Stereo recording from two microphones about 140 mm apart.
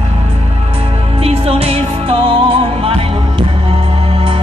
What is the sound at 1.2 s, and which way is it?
Music, 45° right (ahead or behind).